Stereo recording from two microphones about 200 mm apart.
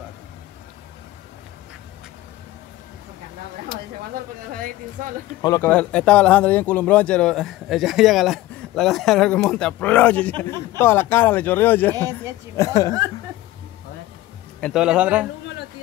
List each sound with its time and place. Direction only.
4.1 s speech: 45° right (ahead or behind)
5.4 s speech: 20° left (ahead or behind)
5.7 s speech: 5° left (ahead or behind)
12.0 s a woman's voice: 15° right (ahead or behind)
12.5 s speech: 15° left (ahead or behind)
14.6 s speech: 5° right (ahead or behind)